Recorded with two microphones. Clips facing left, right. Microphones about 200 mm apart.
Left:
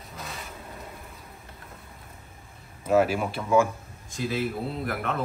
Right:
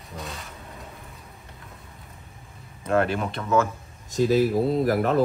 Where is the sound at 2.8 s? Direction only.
5° left (ahead or behind).